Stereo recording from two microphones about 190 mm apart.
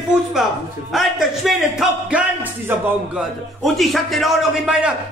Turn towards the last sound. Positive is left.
turn(degrees=-5)  # may be behind; listen again after turning